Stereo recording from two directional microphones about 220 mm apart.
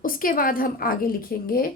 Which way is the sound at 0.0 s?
40° left (ahead or behind).